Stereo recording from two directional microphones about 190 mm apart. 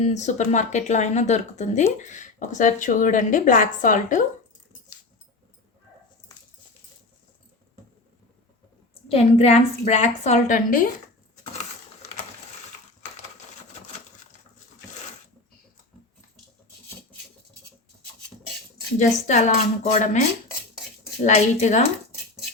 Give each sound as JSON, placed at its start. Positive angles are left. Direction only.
{"t": 0.0, "sound": "speech", "side_deg": 35}
{"t": 9.0, "sound": "speech", "side_deg": 30}
{"t": 18.9, "sound": "speech", "side_deg": 40}